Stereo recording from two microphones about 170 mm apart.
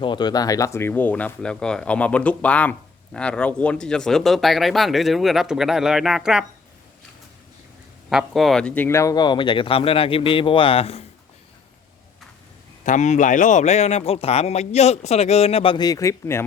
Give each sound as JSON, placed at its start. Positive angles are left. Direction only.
{"t": 0.0, "sound": "speech", "side_deg": 25}
{"t": 8.1, "sound": "speech", "side_deg": 0}
{"t": 12.8, "sound": "speech", "side_deg": 45}